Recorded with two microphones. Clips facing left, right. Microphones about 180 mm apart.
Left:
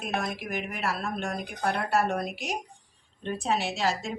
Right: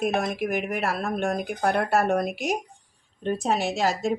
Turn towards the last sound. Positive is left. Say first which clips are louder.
# right 5 dB
turn(degrees=-45)  # may be behind; listen again after turning